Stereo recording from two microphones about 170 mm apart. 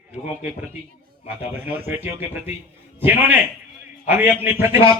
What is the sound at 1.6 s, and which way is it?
Speech, 65° right (ahead or behind).